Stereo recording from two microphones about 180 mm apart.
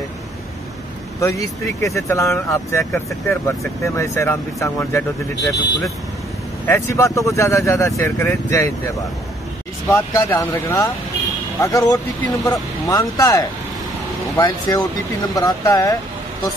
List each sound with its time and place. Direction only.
1.2 s speech: 15° left (ahead or behind)